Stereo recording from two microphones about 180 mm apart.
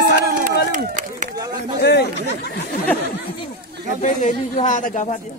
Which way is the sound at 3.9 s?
45° left (ahead or behind).